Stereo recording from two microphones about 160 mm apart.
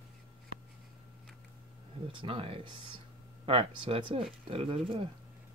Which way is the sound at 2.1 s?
35° right (ahead or behind).